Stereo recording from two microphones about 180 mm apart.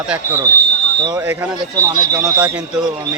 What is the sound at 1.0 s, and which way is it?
Speech, 15° right (ahead or behind).